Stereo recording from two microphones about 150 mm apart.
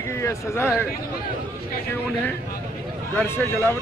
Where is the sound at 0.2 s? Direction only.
20° left (ahead or behind).